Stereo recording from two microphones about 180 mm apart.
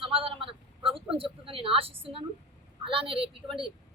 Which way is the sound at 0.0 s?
30° right (ahead or behind).